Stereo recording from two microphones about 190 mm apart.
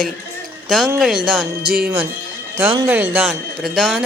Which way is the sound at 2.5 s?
15° right (ahead or behind).